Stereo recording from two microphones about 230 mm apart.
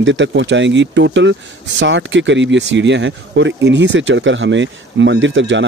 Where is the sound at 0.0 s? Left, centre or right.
Right.